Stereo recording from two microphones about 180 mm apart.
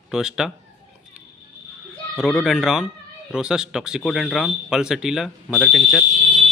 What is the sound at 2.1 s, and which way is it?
A man's voice, centre (ahead or behind).